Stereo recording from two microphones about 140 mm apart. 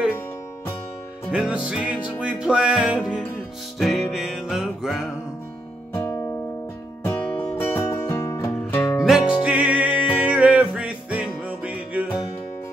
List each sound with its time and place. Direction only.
1.3 s music: 5° right (ahead or behind)
7.4 s music: 15° left (ahead or behind)
9.0 s music: 5° right (ahead or behind)